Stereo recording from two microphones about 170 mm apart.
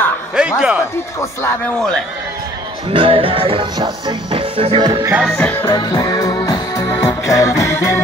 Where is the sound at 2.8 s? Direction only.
30° right (ahead or behind).